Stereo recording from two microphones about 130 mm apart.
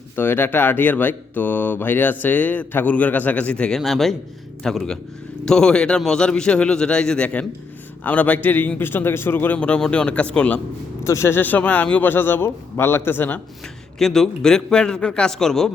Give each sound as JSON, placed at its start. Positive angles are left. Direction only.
{"t": 0.2, "sound": "a man's voice", "side_deg": 15}
{"t": 11.0, "sound": "speech", "side_deg": 20}
{"t": 14.0, "sound": "a man's voice", "side_deg": 5}